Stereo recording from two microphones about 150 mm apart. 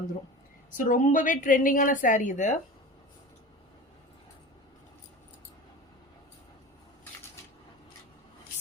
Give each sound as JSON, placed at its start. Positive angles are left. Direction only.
{"t": 0.8, "sound": "a woman's voice", "side_deg": 60}